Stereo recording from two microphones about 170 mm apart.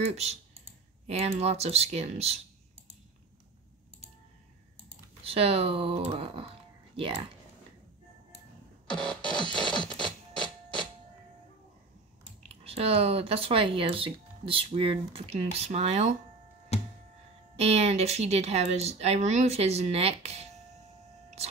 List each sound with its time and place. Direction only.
0.1 s speech: 40° right (ahead or behind)
5.2 s speech: 35° right (ahead or behind)
8.8 s music: 5° left (ahead or behind)
9.6 s music: 25° left (ahead or behind)
12.6 s speech: 35° right (ahead or behind)
16.7 s a sound: 40° left (ahead or behind)
17.6 s speech: 40° right (ahead or behind)